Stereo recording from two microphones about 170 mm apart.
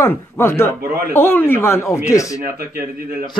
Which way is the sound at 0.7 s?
65° right (ahead or behind).